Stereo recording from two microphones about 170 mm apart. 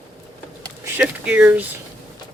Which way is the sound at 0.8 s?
10° right (ahead or behind).